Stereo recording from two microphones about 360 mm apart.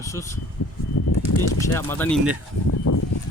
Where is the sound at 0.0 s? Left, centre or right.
Centre.